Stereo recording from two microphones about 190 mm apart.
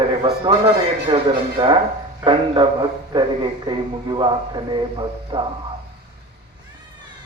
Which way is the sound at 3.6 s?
25° right (ahead or behind).